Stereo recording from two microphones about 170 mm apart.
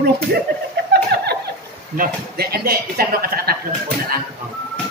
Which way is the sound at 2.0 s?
65° right (ahead or behind).